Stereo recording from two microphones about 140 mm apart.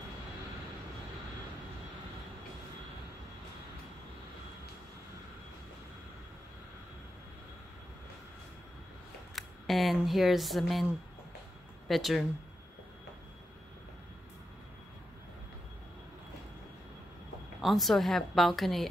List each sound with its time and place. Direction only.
9.3 s a woman's voice: centre (ahead or behind)
17.6 s a woman's voice: centre (ahead or behind)